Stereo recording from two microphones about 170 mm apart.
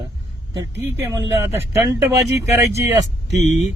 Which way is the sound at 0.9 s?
15° right (ahead or behind).